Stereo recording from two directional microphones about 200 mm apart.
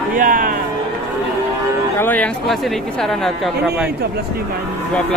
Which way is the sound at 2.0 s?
10° left (ahead or behind).